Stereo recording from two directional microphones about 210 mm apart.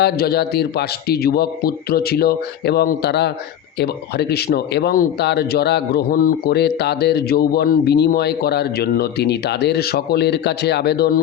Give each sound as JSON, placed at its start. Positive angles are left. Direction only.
{"t": 0.0, "sound": "speech", "side_deg": 50}